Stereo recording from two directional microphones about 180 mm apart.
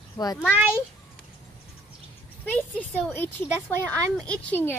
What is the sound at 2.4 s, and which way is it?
A child's voice, 10° left (ahead or behind).